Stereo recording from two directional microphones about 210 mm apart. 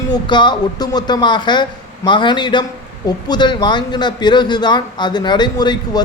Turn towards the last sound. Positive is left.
turn(degrees=20)  # may be behind; listen again after turning